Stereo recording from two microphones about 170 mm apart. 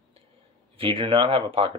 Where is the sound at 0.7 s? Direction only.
30° right (ahead or behind).